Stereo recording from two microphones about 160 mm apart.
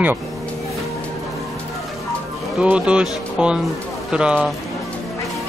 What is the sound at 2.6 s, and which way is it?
Speech, 5° right (ahead or behind).